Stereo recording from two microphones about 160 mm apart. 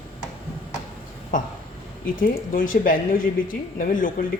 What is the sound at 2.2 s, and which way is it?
Speech, 60° left (ahead or behind).